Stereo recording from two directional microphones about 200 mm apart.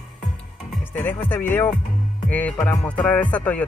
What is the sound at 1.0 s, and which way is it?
Speech, 10° left (ahead or behind).